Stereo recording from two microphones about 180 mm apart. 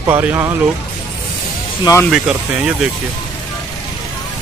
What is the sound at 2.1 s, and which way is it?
Speech, 5° right (ahead or behind).